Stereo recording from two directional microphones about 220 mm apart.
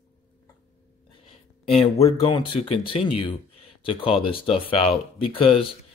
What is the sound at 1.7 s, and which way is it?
Speech, 30° left (ahead or behind).